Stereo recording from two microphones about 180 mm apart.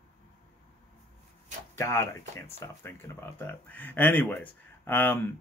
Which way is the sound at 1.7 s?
15° left (ahead or behind).